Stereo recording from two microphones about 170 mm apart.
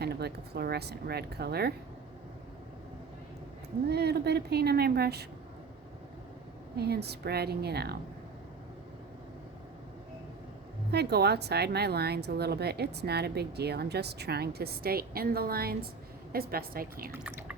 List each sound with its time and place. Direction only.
0.0 s a woman's voice: 70° right (ahead or behind)
3.8 s a woman's voice: 70° right (ahead or behind)
6.7 s a woman's voice: 70° right (ahead or behind)
10.9 s a woman's voice: 75° right (ahead or behind)
17.1 s speech: 15° right (ahead or behind)